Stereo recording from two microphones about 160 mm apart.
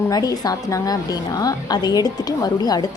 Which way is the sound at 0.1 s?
25° left (ahead or behind).